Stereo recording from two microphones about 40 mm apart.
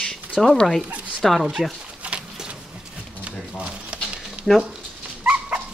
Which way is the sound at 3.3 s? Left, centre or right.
Right.